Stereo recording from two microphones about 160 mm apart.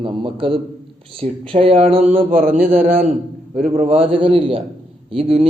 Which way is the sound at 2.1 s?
60° right (ahead or behind).